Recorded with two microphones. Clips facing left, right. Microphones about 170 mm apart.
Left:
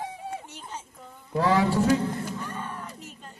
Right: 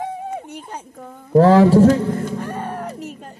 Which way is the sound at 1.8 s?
55° right (ahead or behind).